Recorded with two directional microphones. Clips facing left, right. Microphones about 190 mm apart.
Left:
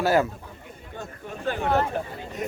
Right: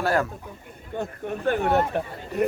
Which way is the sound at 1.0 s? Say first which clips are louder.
Right 5 dB; 55° right (ahead or behind).